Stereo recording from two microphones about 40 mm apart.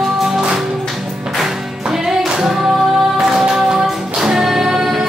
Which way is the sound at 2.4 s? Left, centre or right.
Centre.